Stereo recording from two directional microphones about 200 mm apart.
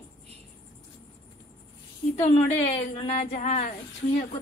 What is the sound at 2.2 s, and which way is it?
A woman's voice, 30° left (ahead or behind).